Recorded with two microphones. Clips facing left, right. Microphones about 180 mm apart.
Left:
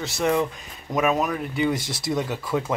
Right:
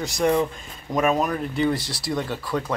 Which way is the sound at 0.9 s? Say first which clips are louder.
Right 1 dB; centre (ahead or behind).